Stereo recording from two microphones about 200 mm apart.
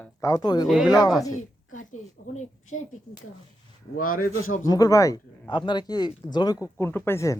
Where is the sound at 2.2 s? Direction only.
40° left (ahead or behind).